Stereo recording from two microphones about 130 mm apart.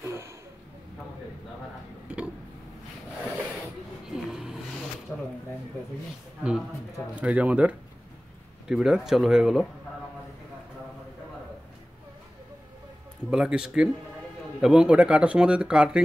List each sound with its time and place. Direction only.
0.0 s a sound: 20° right (ahead or behind)
2.0 s tick-tock: 10° right (ahead or behind)
4.1 s vehicle: 5° right (ahead or behind)
7.2 s speech: 10° right (ahead or behind)
13.3 s speech: 5° right (ahead or behind)